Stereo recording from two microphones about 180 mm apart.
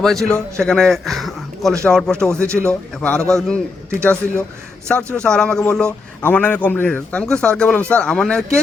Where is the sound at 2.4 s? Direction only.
15° right (ahead or behind).